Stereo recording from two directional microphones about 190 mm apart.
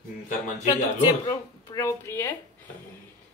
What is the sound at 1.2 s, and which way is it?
Speech, 15° left (ahead or behind).